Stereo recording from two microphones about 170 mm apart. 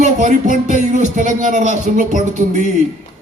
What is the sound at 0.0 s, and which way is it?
A man's voice, 45° right (ahead or behind).